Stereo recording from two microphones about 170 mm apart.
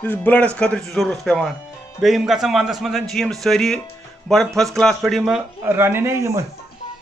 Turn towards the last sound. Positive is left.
turn(degrees=-15)  # may be behind; listen again after turning